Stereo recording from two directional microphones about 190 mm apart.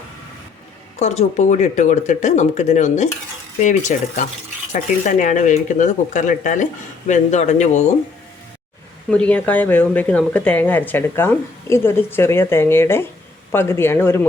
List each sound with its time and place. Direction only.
0.9 s speech: 35° left (ahead or behind)
9.0 s speech: 5° left (ahead or behind)